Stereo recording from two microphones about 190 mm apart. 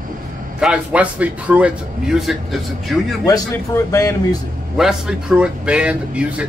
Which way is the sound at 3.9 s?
20° left (ahead or behind).